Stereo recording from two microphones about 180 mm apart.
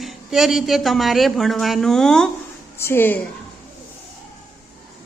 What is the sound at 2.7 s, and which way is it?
Speech, 15° left (ahead or behind).